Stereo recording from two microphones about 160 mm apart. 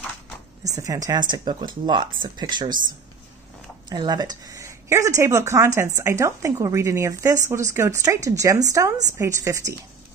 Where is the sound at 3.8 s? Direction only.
25° right (ahead or behind).